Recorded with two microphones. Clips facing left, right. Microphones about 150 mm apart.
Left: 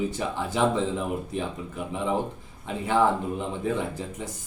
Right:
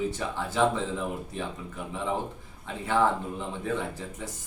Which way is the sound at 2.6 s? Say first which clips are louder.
Left 3 dB; 15° left (ahead or behind).